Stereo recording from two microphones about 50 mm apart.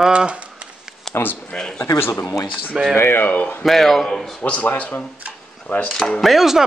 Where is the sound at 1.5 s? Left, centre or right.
Centre.